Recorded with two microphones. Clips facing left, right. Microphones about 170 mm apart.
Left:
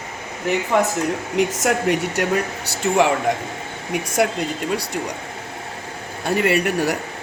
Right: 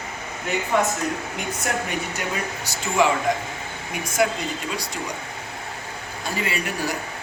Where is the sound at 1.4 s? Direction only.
85° left; by 4.3 s 70° left (ahead or behind).